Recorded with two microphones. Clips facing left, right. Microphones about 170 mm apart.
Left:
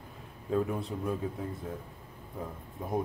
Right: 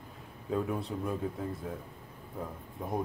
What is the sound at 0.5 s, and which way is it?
Speech, centre (ahead or behind).